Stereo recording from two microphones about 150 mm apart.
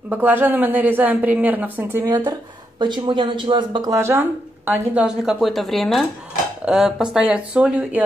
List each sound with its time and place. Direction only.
0.1 s speech: 15° right (ahead or behind)
2.0 s speech: 30° right (ahead or behind); by 8.0 s 5° right (ahead or behind)